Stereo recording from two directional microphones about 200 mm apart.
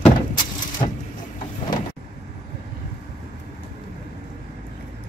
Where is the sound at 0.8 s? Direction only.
25° left (ahead or behind).